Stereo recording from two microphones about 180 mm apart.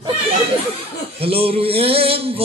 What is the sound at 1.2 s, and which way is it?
Speech, 30° right (ahead or behind).